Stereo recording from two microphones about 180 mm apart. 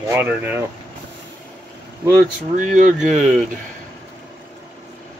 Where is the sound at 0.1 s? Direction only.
10° right (ahead or behind).